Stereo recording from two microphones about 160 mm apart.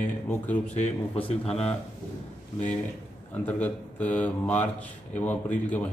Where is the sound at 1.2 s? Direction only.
35° left (ahead or behind).